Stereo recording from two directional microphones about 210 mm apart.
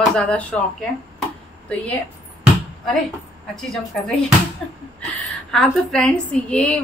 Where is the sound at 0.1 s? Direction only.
5° left (ahead or behind).